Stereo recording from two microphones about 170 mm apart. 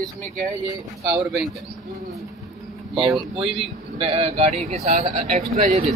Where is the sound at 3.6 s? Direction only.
35° right (ahead or behind).